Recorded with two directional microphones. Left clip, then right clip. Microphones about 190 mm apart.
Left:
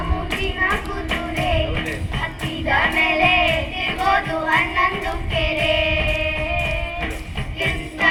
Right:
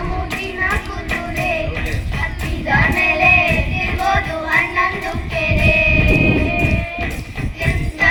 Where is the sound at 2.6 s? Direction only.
35° right (ahead or behind).